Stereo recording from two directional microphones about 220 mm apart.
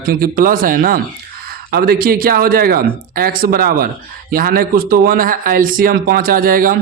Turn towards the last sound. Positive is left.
turn(degrees=-40)  # may be behind; listen again after turning